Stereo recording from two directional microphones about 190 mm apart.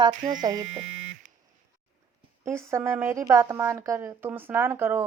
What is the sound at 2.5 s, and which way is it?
A woman's voice, 15° right (ahead or behind).